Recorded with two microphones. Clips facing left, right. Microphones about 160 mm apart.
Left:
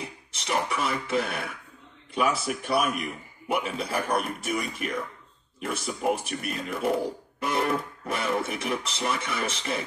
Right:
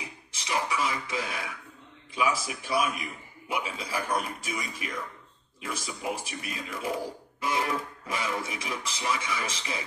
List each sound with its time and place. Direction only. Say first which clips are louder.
0.5 s speech: left 2 dB; 55° left (ahead or behind)